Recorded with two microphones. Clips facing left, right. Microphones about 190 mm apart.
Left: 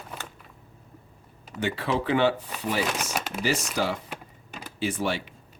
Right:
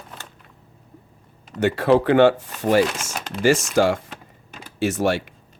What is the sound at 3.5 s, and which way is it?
Speech, 45° right (ahead or behind).